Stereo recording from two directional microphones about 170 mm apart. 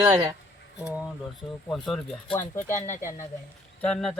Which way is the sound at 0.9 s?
5° right (ahead or behind).